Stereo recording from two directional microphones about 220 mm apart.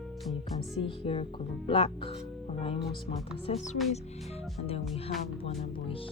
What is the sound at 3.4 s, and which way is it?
Speech, 30° left (ahead or behind).